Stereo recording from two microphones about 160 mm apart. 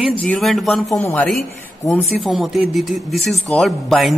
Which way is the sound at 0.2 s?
5° left (ahead or behind).